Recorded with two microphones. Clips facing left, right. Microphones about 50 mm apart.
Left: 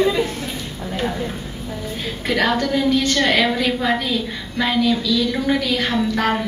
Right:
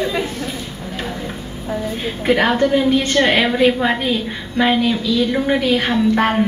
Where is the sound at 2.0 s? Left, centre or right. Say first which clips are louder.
Right 3 dB; right.